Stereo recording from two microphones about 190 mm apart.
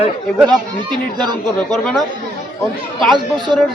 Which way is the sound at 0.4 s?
20° right (ahead or behind).